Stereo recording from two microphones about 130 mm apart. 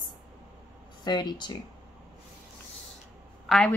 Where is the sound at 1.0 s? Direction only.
35° left (ahead or behind).